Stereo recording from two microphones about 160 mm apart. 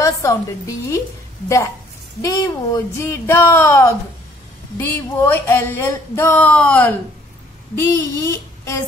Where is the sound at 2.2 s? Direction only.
20° left (ahead or behind).